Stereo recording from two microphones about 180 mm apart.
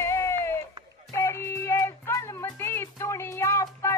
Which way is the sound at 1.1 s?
15° left (ahead or behind).